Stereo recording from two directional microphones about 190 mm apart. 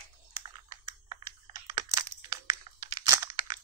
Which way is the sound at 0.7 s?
20° right (ahead or behind).